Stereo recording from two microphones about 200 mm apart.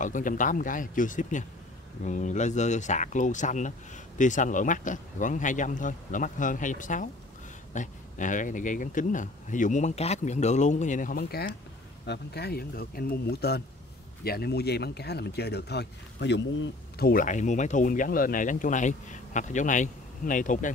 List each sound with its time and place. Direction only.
0.0 s speech: 40° left (ahead or behind); by 17.1 s 60° left (ahead or behind)
17.1 s speech: 40° left (ahead or behind)